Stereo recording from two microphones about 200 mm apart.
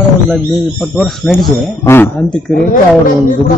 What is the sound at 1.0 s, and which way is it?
A man's voice, centre (ahead or behind).